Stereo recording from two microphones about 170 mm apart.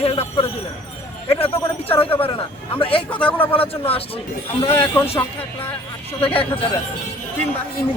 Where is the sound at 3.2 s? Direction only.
10° left (ahead or behind).